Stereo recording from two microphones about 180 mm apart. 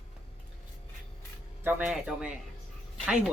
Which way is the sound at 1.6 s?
10° right (ahead or behind).